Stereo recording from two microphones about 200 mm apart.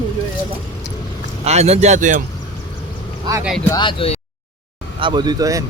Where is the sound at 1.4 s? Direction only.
35° right (ahead or behind).